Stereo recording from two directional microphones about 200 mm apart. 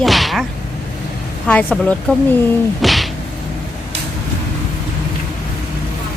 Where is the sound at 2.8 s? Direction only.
Centre (ahead or behind).